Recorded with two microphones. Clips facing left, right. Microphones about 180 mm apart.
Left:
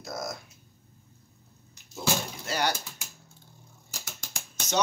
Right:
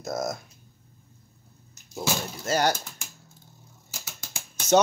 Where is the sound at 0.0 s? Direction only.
45° right (ahead or behind).